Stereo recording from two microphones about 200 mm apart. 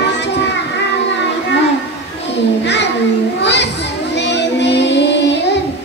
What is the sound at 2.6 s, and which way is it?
Speech, 60° left (ahead or behind).